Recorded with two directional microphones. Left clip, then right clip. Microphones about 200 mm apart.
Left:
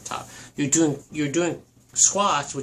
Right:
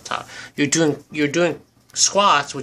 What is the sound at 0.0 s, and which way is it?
Speech, 40° right (ahead or behind).